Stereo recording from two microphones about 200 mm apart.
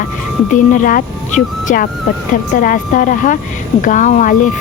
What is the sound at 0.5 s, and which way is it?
Speech, 40° left (ahead or behind).